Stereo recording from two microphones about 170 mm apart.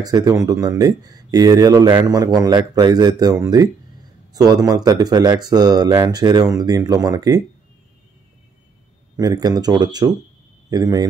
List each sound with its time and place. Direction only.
0.0 s speech: 20° right (ahead or behind)
9.1 s speech: 20° right (ahead or behind)